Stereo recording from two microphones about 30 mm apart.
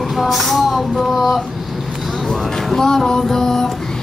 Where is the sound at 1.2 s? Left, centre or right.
Centre.